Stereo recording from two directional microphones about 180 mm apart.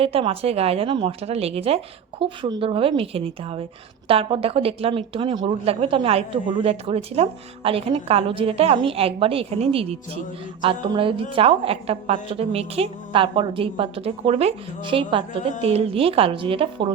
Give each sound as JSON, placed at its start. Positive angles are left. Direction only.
{"t": 0.0, "sound": "speech", "side_deg": -30}